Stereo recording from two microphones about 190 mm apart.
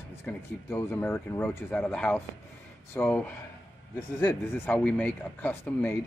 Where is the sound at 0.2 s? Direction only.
10° left (ahead or behind).